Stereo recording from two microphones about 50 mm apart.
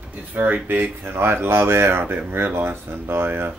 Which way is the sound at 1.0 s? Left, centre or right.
Right.